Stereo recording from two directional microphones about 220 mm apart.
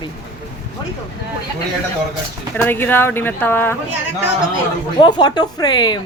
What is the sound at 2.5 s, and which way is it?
Speech, 10° left (ahead or behind).